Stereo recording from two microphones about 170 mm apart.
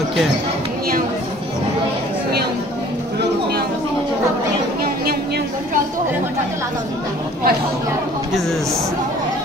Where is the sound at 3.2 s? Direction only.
70° right (ahead or behind).